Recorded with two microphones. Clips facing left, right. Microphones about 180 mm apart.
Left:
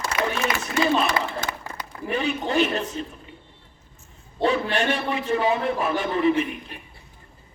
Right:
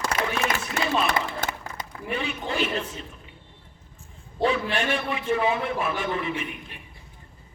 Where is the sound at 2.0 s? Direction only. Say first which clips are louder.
Left 5 dB; 40° left (ahead or behind).